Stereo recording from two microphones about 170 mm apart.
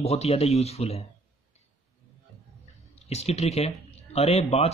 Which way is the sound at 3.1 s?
40° left (ahead or behind).